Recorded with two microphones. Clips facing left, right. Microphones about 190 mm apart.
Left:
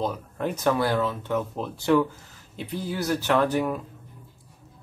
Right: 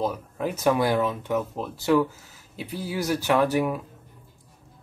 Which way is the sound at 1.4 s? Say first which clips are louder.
Even; centre (ahead or behind).